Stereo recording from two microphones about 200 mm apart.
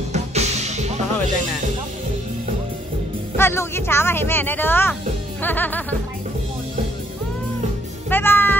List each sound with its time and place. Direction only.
0.1 s music: 35° right (ahead or behind)
3.3 s a woman's voice: 10° left (ahead or behind)
8.1 s music: 10° left (ahead or behind)